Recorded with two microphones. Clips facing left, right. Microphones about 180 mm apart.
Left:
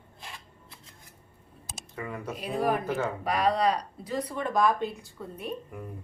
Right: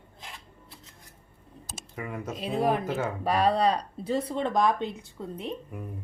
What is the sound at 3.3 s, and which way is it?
Speech, 30° right (ahead or behind).